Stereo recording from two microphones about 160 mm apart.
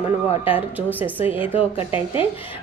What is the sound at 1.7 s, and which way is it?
Speech, 35° left (ahead or behind).